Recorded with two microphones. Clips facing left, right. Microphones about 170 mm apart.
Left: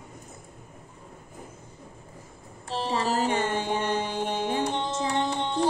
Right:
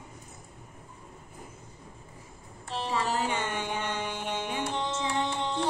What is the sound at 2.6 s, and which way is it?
Mantra, 35° left (ahead or behind).